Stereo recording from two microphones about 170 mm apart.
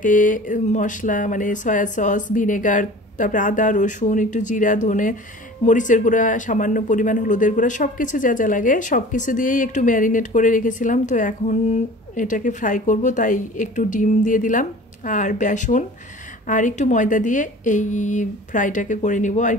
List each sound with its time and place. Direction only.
0.0 s speech: 50° left (ahead or behind)